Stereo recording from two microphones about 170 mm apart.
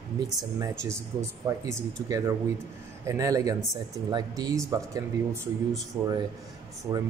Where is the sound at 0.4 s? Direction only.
20° right (ahead or behind).